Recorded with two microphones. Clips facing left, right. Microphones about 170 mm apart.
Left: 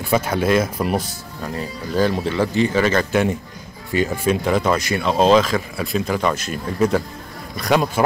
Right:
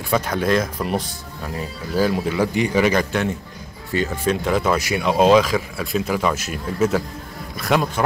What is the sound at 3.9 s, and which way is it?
Speech, 10° left (ahead or behind).